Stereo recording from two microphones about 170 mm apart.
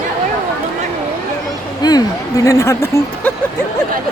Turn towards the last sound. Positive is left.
turn(degrees=15)  # may be behind; listen again after turning